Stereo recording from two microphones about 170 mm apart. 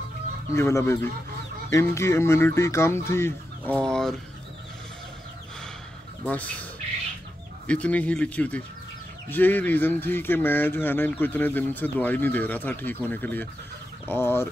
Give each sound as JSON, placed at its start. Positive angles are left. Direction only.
{"t": 0.6, "sound": "speech", "side_deg": 15}
{"t": 6.2, "sound": "speech", "side_deg": 10}